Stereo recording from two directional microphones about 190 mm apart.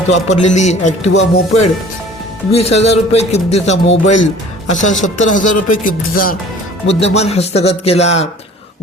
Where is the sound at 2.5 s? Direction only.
35° left (ahead or behind).